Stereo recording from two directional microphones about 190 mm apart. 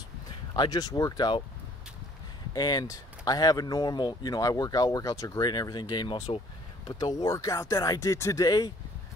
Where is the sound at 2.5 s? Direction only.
20° left (ahead or behind).